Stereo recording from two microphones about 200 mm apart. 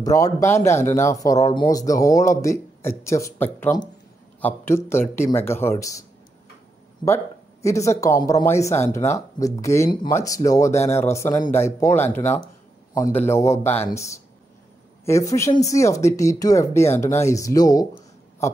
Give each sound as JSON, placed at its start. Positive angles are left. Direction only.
{"t": 0.0, "sound": "speech", "side_deg": 15}
{"t": 7.6, "sound": "a man's voice", "side_deg": 15}